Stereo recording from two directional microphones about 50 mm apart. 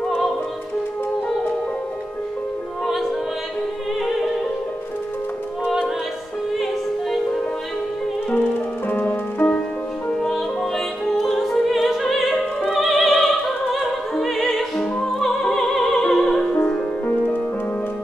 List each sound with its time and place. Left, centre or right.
8.4 s music: left
10.2 s opera: centre
14.8 s music: centre
17.0 s music: left